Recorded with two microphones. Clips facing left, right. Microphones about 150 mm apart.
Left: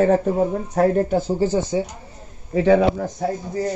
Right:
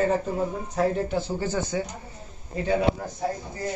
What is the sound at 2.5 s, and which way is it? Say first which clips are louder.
Speech: left 10 dB; 90° left.